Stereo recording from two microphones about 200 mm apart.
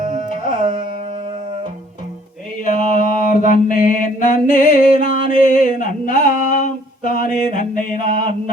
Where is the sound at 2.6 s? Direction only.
40° left (ahead or behind).